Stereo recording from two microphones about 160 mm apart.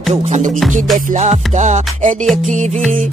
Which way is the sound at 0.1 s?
45° right (ahead or behind).